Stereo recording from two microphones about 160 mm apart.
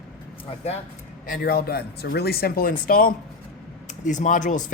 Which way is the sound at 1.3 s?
70° left (ahead or behind).